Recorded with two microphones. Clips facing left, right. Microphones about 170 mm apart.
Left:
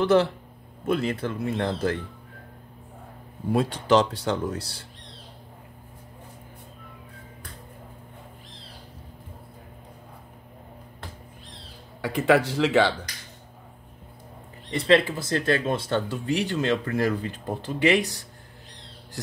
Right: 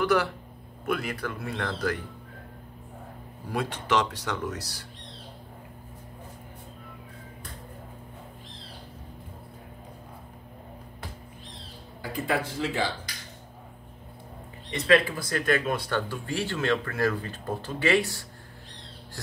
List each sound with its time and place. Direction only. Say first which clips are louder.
0.0 s speech: left 4 dB; 25° left (ahead or behind)
3.4 s speech: left 6 dB; 35° left (ahead or behind)
12.0 s speech: left 8 dB; 85° left
14.7 s speech: left 2 dB; 30° left (ahead or behind)